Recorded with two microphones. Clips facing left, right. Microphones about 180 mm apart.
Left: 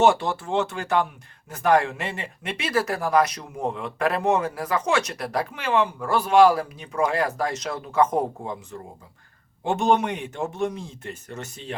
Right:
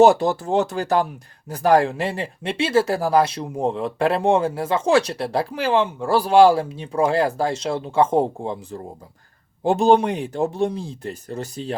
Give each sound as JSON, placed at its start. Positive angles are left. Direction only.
{"t": 0.0, "sound": "speech", "side_deg": -40}